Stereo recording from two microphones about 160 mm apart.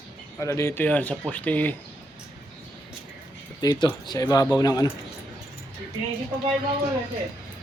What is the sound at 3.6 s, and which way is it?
A man's voice, 30° left (ahead or behind).